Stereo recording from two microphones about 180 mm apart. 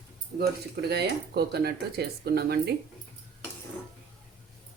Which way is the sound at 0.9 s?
65° right (ahead or behind).